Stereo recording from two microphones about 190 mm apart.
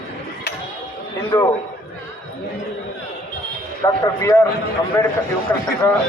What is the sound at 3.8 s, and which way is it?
Speech, 15° left (ahead or behind).